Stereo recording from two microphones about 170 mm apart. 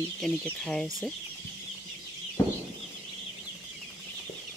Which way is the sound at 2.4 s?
15° left (ahead or behind).